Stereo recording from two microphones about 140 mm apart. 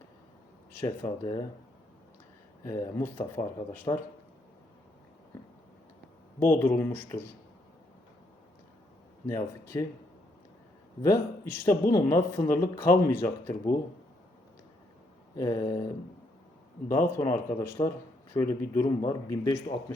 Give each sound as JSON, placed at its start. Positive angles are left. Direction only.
{"t": 0.9, "sound": "speech", "side_deg": 25}
{"t": 2.6, "sound": "speech", "side_deg": 20}
{"t": 3.9, "sound": "speech", "side_deg": 30}
{"t": 6.4, "sound": "speech", "side_deg": 15}
{"t": 9.2, "sound": "speech", "side_deg": 20}
{"t": 11.0, "sound": "speech", "side_deg": 20}
{"t": 15.4, "sound": "speech", "side_deg": 25}
{"t": 16.9, "sound": "speech", "side_deg": 20}